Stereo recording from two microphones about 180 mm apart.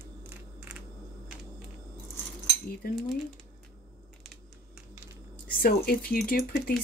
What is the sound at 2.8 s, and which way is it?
Speech, 55° left (ahead or behind).